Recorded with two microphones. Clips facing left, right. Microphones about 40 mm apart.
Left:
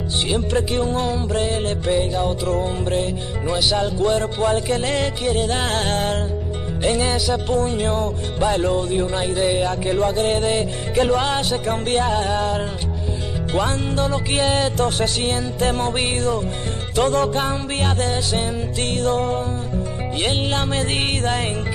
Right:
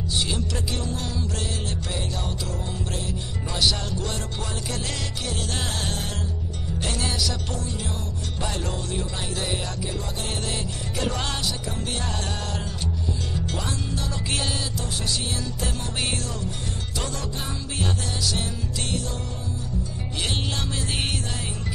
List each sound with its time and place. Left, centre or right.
0.3 s music: left
3.5 s music: centre
5.7 s music: left
6.8 s music: left
7.5 s music: left
8.4 s music: left
9.8 s music: left
11.4 s music: left
12.1 s music: left
13.5 s music: left
14.6 s music: left
16.0 s music: left